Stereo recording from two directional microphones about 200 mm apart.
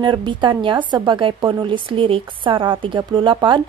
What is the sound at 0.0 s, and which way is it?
Speech, 25° right (ahead or behind).